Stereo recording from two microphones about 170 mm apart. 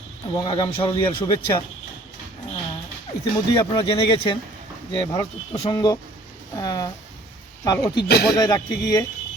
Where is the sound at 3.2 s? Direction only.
30° left (ahead or behind).